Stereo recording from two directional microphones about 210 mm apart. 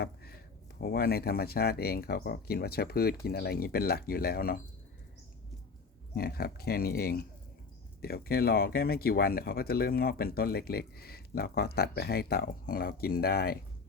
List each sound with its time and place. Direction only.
0.0 s speech: 45° left (ahead or behind)
6.1 s speech: 45° left (ahead or behind)